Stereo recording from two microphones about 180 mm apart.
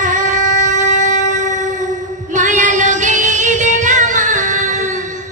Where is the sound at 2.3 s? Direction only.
45° right (ahead or behind).